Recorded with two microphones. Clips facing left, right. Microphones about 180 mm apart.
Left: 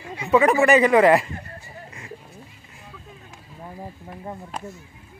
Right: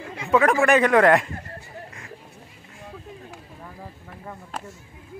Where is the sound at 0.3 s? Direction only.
Centre (ahead or behind).